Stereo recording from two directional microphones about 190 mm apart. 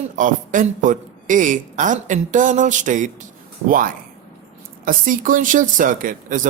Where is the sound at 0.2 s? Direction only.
45° right (ahead or behind).